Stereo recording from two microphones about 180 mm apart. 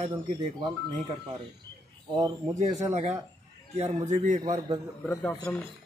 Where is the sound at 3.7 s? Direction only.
40° right (ahead or behind).